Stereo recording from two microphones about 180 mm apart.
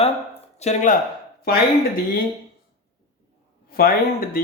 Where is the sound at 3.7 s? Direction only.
55° left (ahead or behind).